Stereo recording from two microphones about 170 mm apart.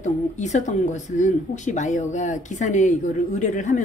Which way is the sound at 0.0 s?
45° left (ahead or behind).